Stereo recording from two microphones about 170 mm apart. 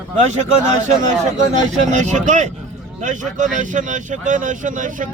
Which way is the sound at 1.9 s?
45° right (ahead or behind).